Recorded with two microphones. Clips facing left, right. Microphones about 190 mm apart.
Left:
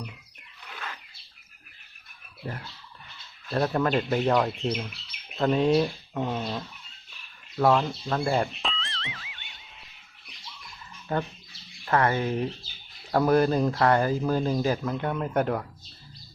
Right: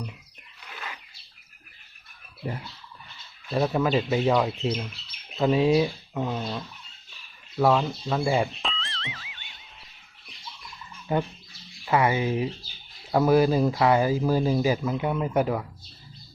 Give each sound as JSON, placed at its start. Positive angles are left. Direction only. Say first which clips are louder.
{"t": 2.4, "sound": "speech", "louder": "right 3 dB", "side_deg": -10}
{"t": 11.1, "sound": "speech", "louder": "right 3 dB", "side_deg": -15}